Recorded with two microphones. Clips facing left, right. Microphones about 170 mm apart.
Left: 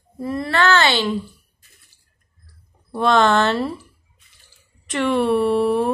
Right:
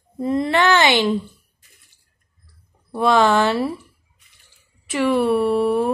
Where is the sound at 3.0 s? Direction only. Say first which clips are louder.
Even; 10° right (ahead or behind).